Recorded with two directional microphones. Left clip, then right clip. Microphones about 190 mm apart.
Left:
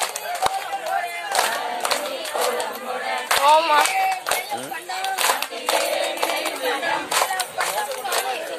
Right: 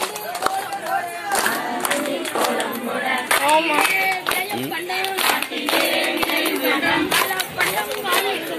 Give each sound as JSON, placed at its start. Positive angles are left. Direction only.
{"t": 3.4, "sound": "clapping", "side_deg": 25}